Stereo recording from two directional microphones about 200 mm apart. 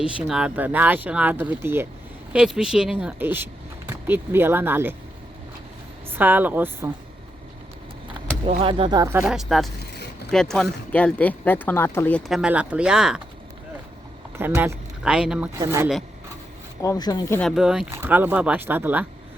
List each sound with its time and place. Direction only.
0.0 s speech: 5° right (ahead or behind)
6.1 s speech: 10° right (ahead or behind)
8.4 s speech: 30° right (ahead or behind); by 13.2 s 5° right (ahead or behind)
14.3 s speech: 10° right (ahead or behind)
15.5 s speech: 15° right (ahead or behind)
16.8 s speech: 15° left (ahead or behind)
17.4 s speech: 5° right (ahead or behind)